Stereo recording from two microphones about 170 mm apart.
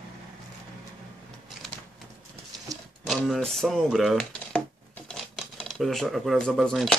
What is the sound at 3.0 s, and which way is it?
Speech, centre (ahead or behind).